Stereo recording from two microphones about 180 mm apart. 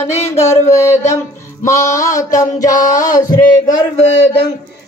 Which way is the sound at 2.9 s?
20° left (ahead or behind).